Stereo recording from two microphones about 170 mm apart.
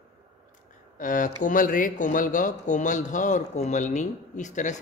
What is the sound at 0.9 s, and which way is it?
Speech, 50° left (ahead or behind).